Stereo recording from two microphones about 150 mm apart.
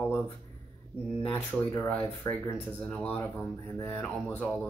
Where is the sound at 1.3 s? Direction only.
15° left (ahead or behind).